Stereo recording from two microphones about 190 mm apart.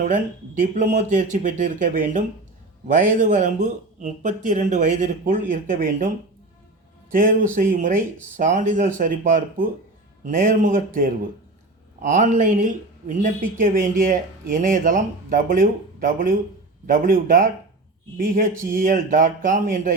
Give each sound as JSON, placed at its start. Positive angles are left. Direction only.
{"t": 0.0, "sound": "speech", "side_deg": -40}
{"t": 7.1, "sound": "speech", "side_deg": -45}